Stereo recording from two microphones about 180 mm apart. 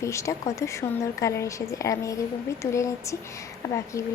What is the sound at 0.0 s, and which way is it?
A woman's voice, 15° left (ahead or behind).